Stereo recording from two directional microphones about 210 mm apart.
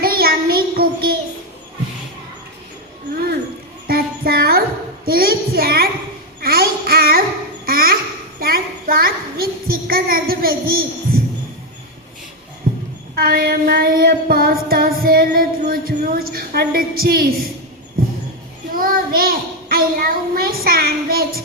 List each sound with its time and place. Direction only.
0.0 s child singing: 45° right (ahead or behind)
3.8 s music: 45° right (ahead or behind)
5.0 s child singing: 45° right (ahead or behind)
6.4 s babbling: 45° right (ahead or behind)
8.4 s a sound: 45° right (ahead or behind)
12.7 s a sound: 45° right (ahead or behind)
13.1 s child singing: 45° right (ahead or behind)
18.7 s child singing: 45° right (ahead or behind)